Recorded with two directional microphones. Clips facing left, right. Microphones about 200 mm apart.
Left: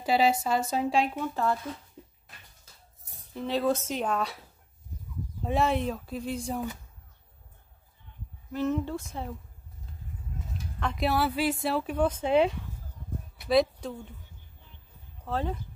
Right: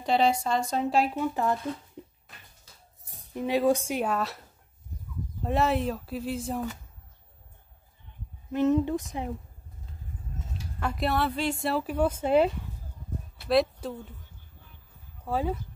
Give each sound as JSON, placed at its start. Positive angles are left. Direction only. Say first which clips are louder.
{"t": 0.0, "sound": "speech", "louder": "even", "side_deg": 5}
{"t": 1.1, "sound": "speech", "louder": "right 2 dB", "side_deg": -15}
{"t": 3.3, "sound": "speech", "louder": "right 3 dB", "side_deg": -15}
{"t": 8.5, "sound": "speech", "louder": "right 5 dB", "side_deg": -20}
{"t": 10.8, "sound": "speech", "louder": "even", "side_deg": -10}
{"t": 11.1, "sound": "speech", "louder": "left 1 dB", "side_deg": 5}
{"t": 13.5, "sound": "a sound", "louder": "even", "side_deg": 0}
{"t": 15.2, "sound": "speech", "louder": "right 3 dB", "side_deg": -10}